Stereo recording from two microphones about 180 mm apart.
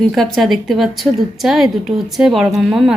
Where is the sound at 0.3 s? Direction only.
Centre (ahead or behind).